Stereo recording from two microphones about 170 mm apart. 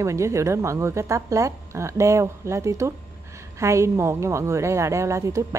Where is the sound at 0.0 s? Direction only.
15° right (ahead or behind).